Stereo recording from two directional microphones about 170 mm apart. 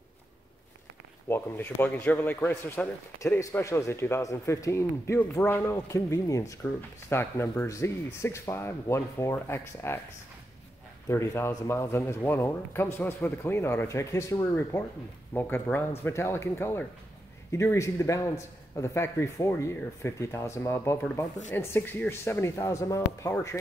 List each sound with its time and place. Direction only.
1.3 s speech: 10° left (ahead or behind)
11.1 s speech: 15° left (ahead or behind)